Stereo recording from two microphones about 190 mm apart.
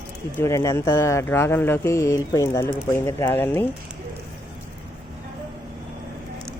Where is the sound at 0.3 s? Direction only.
15° left (ahead or behind).